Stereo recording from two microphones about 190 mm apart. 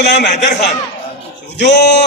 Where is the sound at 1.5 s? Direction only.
65° left (ahead or behind).